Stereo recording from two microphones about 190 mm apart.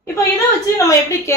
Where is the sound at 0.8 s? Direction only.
15° left (ahead or behind).